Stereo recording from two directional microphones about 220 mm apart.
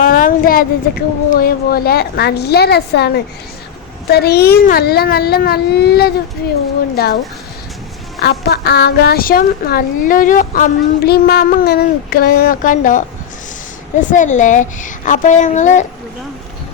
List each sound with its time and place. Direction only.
0.0 s speech: 40° left (ahead or behind)
4.1 s speech: 45° left (ahead or behind)
8.2 s speech: 45° left (ahead or behind)
14.1 s a woman's voice: 35° left (ahead or behind)